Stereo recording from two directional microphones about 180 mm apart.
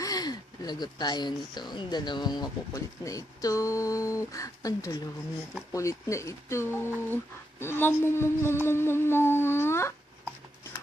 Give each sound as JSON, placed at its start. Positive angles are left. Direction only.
{"t": 0.0, "sound": "speech", "side_deg": 20}